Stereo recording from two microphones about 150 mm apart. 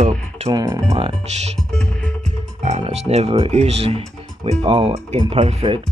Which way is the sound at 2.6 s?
45° right (ahead or behind).